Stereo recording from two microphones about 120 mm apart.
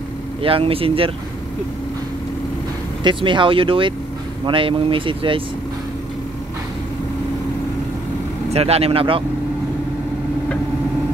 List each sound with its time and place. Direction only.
0.4 s speech: 50° right (ahead or behind)
3.0 s speech: 40° right (ahead or behind)
8.5 s speech: 60° right (ahead or behind)